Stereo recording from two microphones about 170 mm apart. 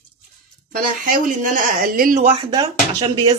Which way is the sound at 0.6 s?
50° right (ahead or behind).